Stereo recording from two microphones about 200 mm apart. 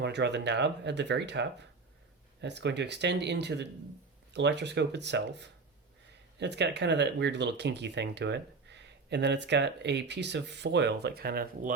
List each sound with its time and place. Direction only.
0.0 s speech: 60° right (ahead or behind)